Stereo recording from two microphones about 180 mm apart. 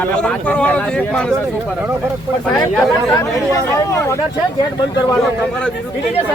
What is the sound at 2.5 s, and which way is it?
Speech, centre (ahead or behind).